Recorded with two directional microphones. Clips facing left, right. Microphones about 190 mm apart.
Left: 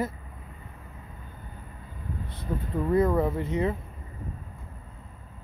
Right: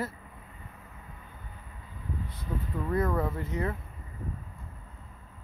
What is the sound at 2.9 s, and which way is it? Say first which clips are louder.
Speech: left 6 dB; 20° left (ahead or behind).